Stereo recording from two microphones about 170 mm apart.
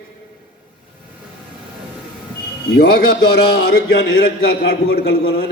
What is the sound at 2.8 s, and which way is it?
A man's voice, 65° left (ahead or behind).